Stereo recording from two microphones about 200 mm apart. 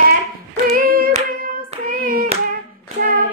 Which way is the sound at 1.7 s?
45° right (ahead or behind).